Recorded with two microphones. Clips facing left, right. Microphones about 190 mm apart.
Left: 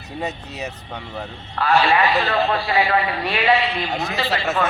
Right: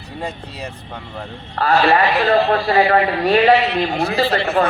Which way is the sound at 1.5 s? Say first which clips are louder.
Right 3 dB; 40° right (ahead or behind).